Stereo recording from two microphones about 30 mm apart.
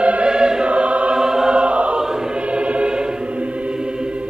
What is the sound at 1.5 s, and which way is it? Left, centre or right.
Choir, right.